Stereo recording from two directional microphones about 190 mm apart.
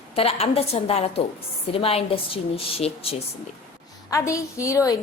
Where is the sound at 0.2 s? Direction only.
30° left (ahead or behind).